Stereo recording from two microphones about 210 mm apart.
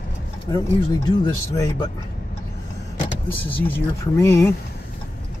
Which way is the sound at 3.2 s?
10° left (ahead or behind).